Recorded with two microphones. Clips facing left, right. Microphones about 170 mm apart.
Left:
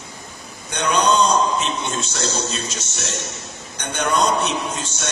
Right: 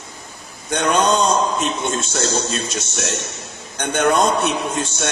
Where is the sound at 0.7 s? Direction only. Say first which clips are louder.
Right 2 dB; 50° right (ahead or behind).